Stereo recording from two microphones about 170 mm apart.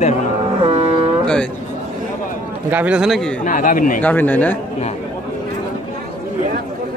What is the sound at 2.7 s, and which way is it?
Speech, 10° right (ahead or behind).